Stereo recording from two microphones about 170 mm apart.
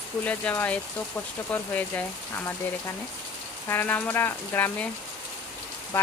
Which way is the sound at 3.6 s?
10° left (ahead or behind).